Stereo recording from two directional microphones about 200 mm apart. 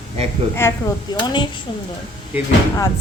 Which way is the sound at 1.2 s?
20° left (ahead or behind).